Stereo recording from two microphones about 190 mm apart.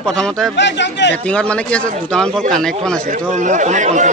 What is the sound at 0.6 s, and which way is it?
Speech, 65° left (ahead or behind).